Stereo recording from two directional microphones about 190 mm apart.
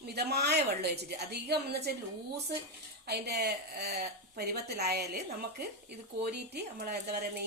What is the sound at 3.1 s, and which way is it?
Speech, 55° right (ahead or behind).